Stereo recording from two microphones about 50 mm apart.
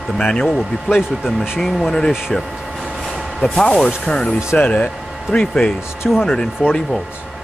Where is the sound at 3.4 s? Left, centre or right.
Centre.